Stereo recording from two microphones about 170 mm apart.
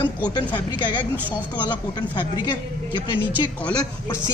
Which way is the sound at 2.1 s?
25° left (ahead or behind).